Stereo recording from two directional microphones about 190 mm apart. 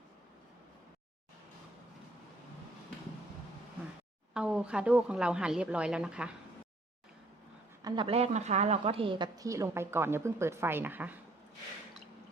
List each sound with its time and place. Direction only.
4.4 s a woman's voice: 5° right (ahead or behind)
7.8 s a woman's voice: 25° right (ahead or behind)